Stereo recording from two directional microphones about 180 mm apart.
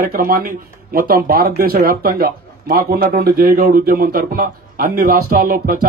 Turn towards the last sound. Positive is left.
turn(degrees=-55)  # may be behind; listen again after turning